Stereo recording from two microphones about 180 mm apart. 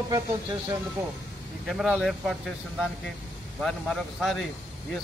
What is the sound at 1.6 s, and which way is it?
A man's voice, 5° right (ahead or behind).